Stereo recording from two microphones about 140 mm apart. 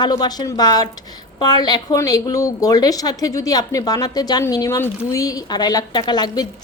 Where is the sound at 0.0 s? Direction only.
30° left (ahead or behind).